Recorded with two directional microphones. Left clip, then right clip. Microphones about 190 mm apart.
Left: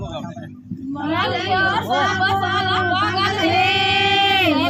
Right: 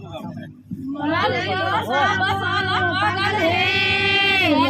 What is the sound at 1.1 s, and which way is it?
Speech, 5° right (ahead or behind).